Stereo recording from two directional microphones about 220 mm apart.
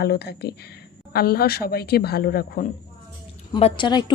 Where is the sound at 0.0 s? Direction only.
45° left (ahead or behind).